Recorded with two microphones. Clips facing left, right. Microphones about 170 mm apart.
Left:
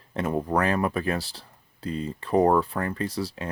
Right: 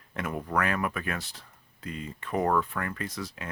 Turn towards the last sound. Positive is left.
turn(degrees=30)  # may be behind; listen again after turning